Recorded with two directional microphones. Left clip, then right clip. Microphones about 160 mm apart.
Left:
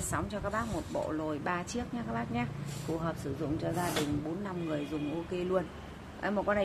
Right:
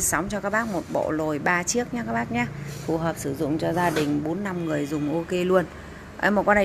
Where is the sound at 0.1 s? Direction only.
30° right (ahead or behind).